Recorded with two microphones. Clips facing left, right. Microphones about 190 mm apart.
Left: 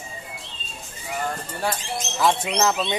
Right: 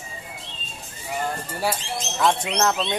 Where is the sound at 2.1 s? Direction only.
5° left (ahead or behind).